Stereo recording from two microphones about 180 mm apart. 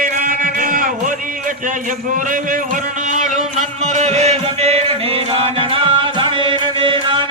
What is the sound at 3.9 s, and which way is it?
Music, 40° right (ahead or behind).